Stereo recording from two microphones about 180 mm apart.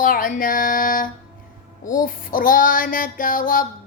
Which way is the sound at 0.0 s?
50° left (ahead or behind).